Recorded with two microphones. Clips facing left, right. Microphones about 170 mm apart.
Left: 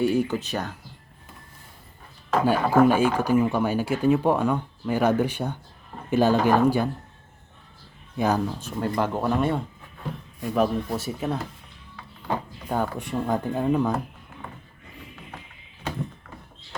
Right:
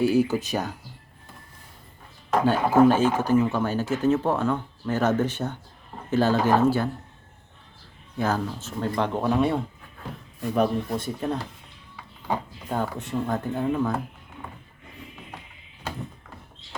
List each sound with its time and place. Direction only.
0.0 s speech: centre (ahead or behind)
2.4 s speech: 10° left (ahead or behind)
8.2 s speech: 15° left (ahead or behind)
12.6 s speech: 10° left (ahead or behind)